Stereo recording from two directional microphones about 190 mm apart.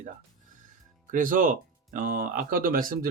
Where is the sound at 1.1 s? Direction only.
45° right (ahead or behind).